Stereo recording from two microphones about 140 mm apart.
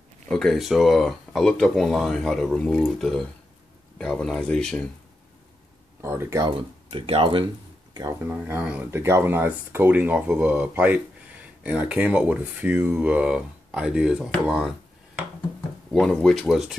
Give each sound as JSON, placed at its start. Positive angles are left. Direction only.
{"t": 0.3, "sound": "speech", "side_deg": 5}
{"t": 5.9, "sound": "speech", "side_deg": -20}
{"t": 6.4, "sound": "speech", "side_deg": -40}
{"t": 7.9, "sound": "speech", "side_deg": -30}
{"t": 8.3, "sound": "speech", "side_deg": -15}
{"t": 15.9, "sound": "speech", "side_deg": 5}